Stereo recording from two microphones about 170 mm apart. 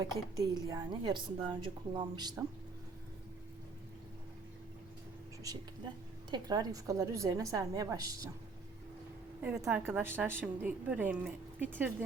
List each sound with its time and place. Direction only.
0.0 s a woman's voice: 20° right (ahead or behind)
6.3 s a woman's voice: 25° right (ahead or behind)
9.4 s a woman's voice: 10° right (ahead or behind)